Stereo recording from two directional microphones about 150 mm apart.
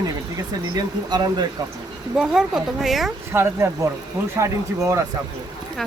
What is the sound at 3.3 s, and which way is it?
Speech, 15° right (ahead or behind).